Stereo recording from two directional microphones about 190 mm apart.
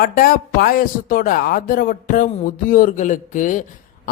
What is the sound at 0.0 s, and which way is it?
Speech, 50° left (ahead or behind).